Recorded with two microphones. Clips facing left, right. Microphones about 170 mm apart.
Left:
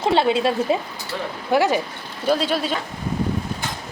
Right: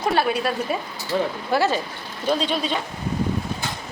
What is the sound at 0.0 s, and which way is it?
A woman's voice, 25° left (ahead or behind).